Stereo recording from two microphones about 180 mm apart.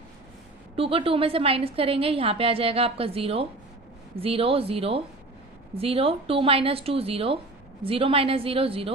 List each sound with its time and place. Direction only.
0.8 s a woman's voice: 30° right (ahead or behind)